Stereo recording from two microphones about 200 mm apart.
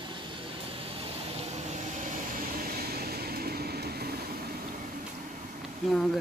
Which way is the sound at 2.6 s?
50° right (ahead or behind).